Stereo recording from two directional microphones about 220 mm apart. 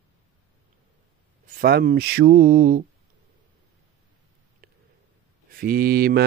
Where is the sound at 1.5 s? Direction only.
45° right (ahead or behind).